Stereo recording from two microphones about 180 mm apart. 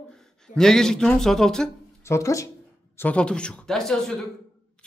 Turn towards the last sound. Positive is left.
turn(degrees=5)  # may be behind; listen again after turning